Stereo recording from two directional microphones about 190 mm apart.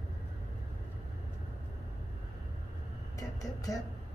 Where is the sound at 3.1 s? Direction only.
20° left (ahead or behind).